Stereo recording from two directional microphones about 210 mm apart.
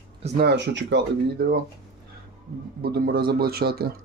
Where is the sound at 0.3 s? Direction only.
55° right (ahead or behind).